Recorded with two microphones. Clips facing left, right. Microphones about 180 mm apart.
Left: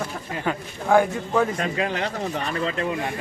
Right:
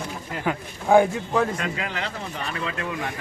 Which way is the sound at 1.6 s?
40° left (ahead or behind).